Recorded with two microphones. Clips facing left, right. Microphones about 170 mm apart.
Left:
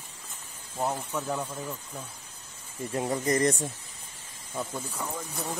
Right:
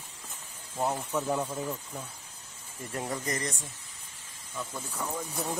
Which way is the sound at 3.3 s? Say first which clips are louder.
Left 9 dB; 45° left (ahead or behind).